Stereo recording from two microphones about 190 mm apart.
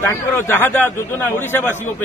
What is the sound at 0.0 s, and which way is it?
A man's voice, 15° left (ahead or behind).